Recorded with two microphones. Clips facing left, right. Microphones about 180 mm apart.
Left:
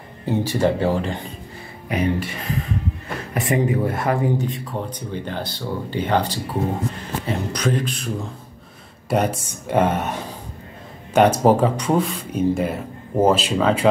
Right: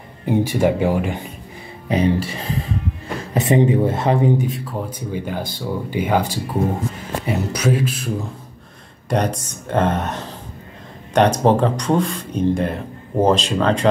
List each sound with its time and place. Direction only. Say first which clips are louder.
0.5 s speech: left 1 dB; 10° right (ahead or behind)
1.9 s speech: right 4 dB; 30° right (ahead or behind)
4.5 s speech: right 1 dB; centre (ahead or behind)